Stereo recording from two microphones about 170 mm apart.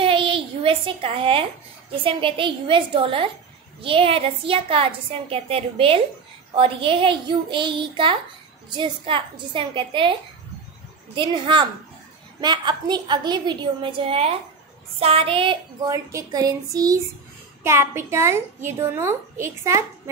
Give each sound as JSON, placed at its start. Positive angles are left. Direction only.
{"t": 0.0, "sound": "a sound", "side_deg": -30}
{"t": 2.0, "sound": "a woman's voice", "side_deg": -30}
{"t": 11.1, "sound": "a woman's voice", "side_deg": -30}
{"t": 15.9, "sound": "a woman's voice", "side_deg": -20}